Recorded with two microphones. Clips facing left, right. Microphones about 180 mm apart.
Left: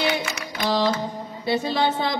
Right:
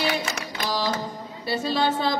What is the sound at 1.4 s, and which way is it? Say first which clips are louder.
Speech: left 2 dB; 20° left (ahead or behind).